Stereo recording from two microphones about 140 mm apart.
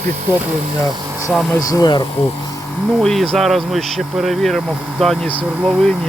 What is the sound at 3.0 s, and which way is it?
Speech, centre (ahead or behind).